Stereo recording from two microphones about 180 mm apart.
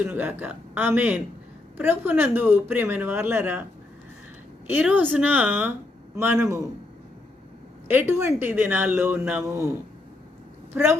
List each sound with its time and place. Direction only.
0.0 s speech: 10° right (ahead or behind)
7.9 s speech: 10° right (ahead or behind)